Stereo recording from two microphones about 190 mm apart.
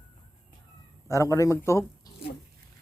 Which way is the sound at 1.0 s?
15° left (ahead or behind).